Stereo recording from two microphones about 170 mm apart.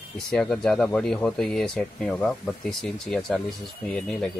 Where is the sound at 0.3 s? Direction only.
5° left (ahead or behind).